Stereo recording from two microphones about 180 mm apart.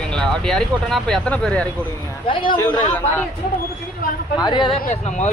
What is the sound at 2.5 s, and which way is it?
Speech, 10° left (ahead or behind).